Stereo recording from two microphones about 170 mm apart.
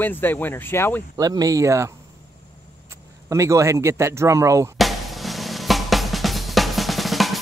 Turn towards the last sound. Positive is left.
turn(degrees=0)  # may be behind; listen again after turning